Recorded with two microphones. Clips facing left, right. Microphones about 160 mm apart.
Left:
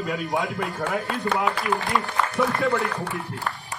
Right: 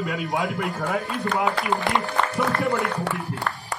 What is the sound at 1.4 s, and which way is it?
Speech, 20° right (ahead or behind).